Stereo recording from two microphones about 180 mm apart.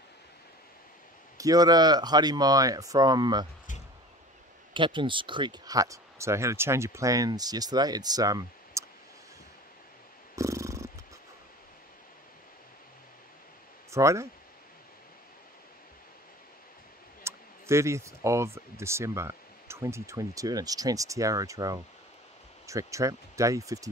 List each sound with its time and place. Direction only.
1.4 s speech: 20° right (ahead or behind)
4.7 s speech: 25° right (ahead or behind)
10.3 s purr: 15° right (ahead or behind)
13.8 s speech: 15° right (ahead or behind)
17.2 s speech: 15° right (ahead or behind)